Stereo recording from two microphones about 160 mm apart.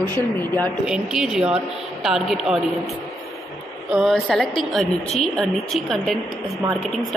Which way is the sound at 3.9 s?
Centre (ahead or behind).